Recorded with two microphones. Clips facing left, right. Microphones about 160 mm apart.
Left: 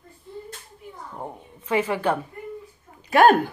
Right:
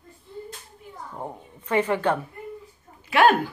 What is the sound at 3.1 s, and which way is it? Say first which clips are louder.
Speech: left 3 dB; 45° left (ahead or behind).